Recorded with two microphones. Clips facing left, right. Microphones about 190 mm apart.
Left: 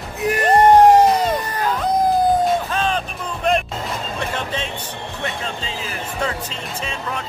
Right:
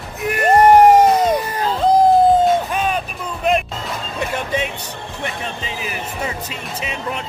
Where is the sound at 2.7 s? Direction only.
10° right (ahead or behind).